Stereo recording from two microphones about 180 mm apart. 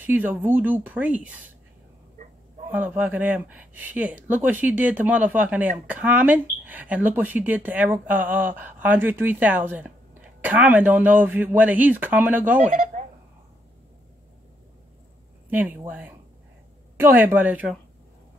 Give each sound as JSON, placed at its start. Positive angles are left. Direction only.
{"t": 0.0, "sound": "speech", "side_deg": -10}
{"t": 2.2, "sound": "a sound", "side_deg": -45}
{"t": 2.7, "sound": "speech", "side_deg": -10}
{"t": 12.5, "sound": "speech", "side_deg": -45}
{"t": 15.5, "sound": "speech", "side_deg": -10}